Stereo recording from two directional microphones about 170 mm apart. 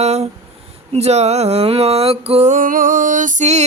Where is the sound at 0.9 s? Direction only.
40° right (ahead or behind).